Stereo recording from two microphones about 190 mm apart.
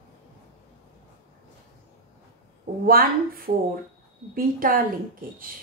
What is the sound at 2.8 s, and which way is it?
A woman's voice, 50° right (ahead or behind).